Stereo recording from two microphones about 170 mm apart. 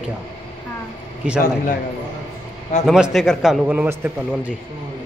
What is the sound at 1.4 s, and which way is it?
Speech, 55° left (ahead or behind).